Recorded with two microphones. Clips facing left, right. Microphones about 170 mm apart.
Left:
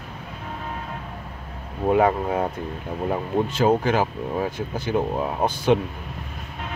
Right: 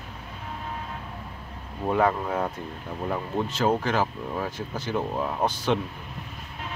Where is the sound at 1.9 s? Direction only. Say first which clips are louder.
Left 4 dB; 15° left (ahead or behind).